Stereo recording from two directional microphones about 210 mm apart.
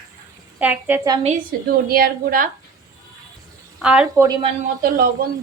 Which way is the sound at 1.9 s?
45° right (ahead or behind).